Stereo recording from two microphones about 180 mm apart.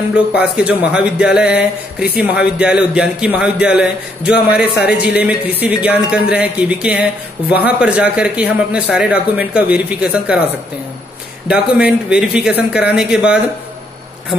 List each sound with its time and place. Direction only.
0.4 s speech: 5° right (ahead or behind)
4.7 s speech: 65° left (ahead or behind)
5.1 s speech: 10° right (ahead or behind)
11.4 s speech: 5° right (ahead or behind)